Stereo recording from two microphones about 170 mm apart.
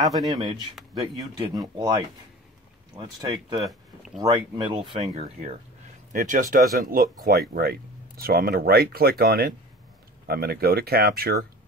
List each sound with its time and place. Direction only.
0.3 s speech: 25° right (ahead or behind)
3.6 s a sound: centre (ahead or behind)
4.2 s speech: 25° right (ahead or behind)
6.1 s speech: 50° right (ahead or behind); by 11.4 s 65° right (ahead or behind)